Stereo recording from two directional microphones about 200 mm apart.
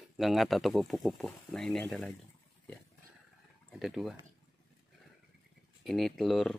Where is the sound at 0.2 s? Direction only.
Centre (ahead or behind).